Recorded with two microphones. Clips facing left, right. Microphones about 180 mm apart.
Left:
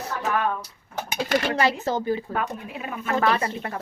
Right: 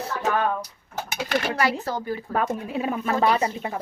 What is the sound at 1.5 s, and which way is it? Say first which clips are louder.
Speech: left 2 dB; 25° left (ahead or behind).